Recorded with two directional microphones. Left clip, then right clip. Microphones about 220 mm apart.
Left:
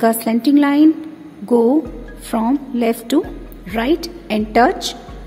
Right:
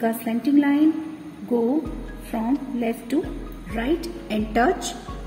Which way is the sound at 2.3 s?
55° left (ahead or behind).